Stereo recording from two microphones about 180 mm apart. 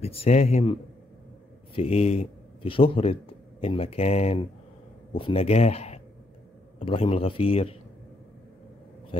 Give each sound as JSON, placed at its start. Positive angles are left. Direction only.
{"t": 0.0, "sound": "a man's voice", "side_deg": 35}
{"t": 1.8, "sound": "a man's voice", "side_deg": 35}